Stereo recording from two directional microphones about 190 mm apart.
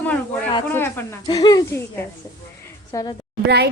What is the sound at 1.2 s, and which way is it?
Speech, 20° left (ahead or behind).